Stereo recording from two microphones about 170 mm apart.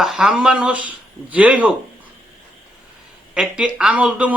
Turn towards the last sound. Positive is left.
turn(degrees=-10)  # may be behind; listen again after turning